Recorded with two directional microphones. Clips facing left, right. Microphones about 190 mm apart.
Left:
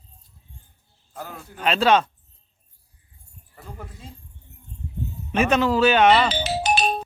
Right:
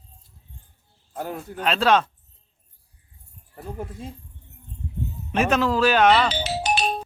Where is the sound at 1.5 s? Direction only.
Centre (ahead or behind).